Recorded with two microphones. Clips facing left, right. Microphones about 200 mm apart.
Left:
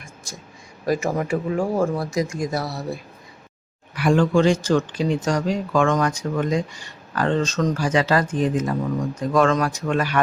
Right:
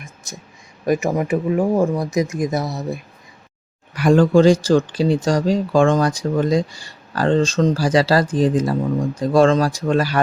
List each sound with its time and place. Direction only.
0.9 s speech: 15° right (ahead or behind)
3.9 s speech: 40° right (ahead or behind)